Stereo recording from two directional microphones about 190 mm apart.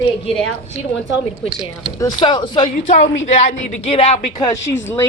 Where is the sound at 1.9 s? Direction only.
20° left (ahead or behind).